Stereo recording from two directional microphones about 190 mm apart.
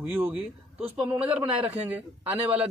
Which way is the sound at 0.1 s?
5° right (ahead or behind).